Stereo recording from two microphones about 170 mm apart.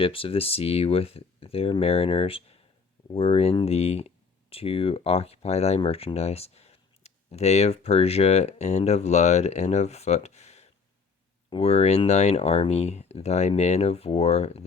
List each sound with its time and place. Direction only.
0.0 s speech: 35° left (ahead or behind)